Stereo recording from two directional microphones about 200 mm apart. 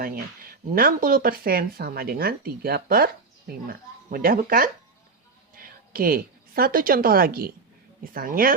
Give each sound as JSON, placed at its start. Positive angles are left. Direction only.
{"t": 0.0, "sound": "speech", "side_deg": -45}